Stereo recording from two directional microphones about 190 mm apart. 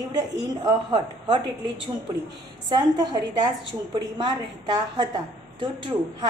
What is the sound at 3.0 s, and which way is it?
A woman's voice, 20° right (ahead or behind).